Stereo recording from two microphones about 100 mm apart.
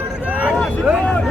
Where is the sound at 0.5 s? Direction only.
10° left (ahead or behind).